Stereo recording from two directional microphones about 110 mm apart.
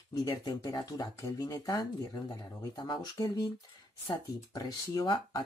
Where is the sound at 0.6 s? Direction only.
35° left (ahead or behind).